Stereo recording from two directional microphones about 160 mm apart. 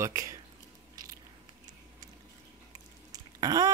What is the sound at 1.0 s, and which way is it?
Biting, 25° right (ahead or behind).